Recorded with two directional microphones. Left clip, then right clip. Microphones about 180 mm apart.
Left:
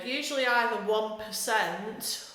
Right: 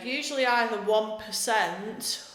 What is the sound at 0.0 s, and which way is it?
A woman's voice, 25° right (ahead or behind).